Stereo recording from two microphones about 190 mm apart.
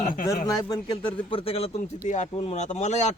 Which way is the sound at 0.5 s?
20° left (ahead or behind).